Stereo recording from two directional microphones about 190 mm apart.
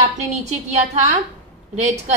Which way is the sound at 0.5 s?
35° right (ahead or behind).